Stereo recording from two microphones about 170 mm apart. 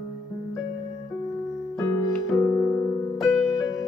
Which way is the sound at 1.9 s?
15° left (ahead or behind).